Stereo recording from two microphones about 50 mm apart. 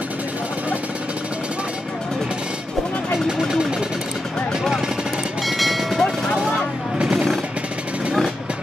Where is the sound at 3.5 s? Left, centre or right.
Centre.